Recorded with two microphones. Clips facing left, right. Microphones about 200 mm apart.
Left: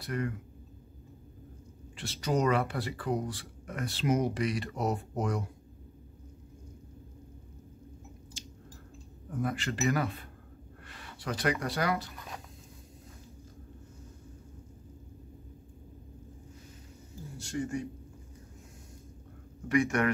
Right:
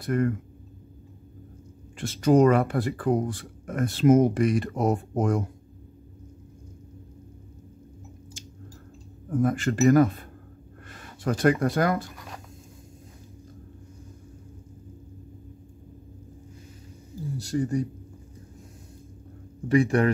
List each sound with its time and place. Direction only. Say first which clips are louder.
0.0 s speech: right 9 dB; 50° right (ahead or behind)
2.0 s speech: right 11 dB; 50° right (ahead or behind)
9.3 s speech: right 9 dB; 50° right (ahead or behind)
10.9 s a sound: right 9 dB; 45° right (ahead or behind)
11.6 s speech: right 7 dB; 50° right (ahead or behind)
17.4 s speech: right 7 dB; 35° right (ahead or behind)
19.7 s speech: right 6 dB; 30° right (ahead or behind)